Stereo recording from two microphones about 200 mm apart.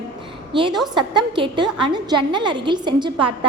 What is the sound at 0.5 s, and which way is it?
A woman's voice, 25° right (ahead or behind).